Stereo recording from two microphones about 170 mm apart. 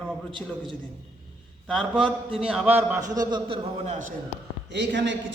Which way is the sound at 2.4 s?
5° right (ahead or behind).